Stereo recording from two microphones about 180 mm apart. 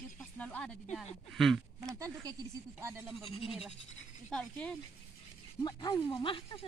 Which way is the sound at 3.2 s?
35° left (ahead or behind).